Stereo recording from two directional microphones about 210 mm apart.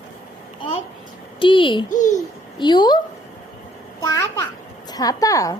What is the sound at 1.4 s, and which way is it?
Speech, 25° left (ahead or behind).